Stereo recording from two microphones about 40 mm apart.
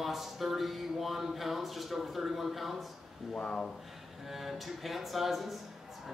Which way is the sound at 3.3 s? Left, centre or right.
Left.